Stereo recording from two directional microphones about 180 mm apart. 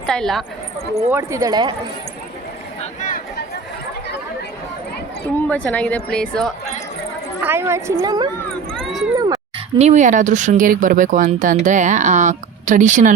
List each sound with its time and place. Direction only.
0.0 s speech: 5° left (ahead or behind)
1.1 s speech: 15° right (ahead or behind)
5.4 s speech: 10° left (ahead or behind)
7.4 s speech: 15° right (ahead or behind)
8.4 s a sound: 5° left (ahead or behind)
9.7 s speech: 40° right (ahead or behind)